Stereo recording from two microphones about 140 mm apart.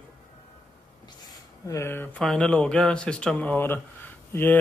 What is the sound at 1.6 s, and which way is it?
Speech, 20° left (ahead or behind).